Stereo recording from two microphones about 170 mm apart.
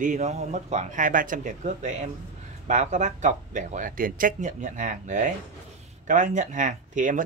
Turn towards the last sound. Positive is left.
turn(degrees=-50)  # may be behind; listen again after turning